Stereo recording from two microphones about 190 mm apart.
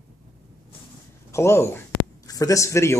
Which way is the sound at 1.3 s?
15° left (ahead or behind).